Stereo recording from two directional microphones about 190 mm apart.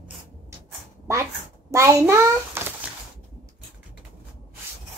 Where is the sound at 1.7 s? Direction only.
15° right (ahead or behind).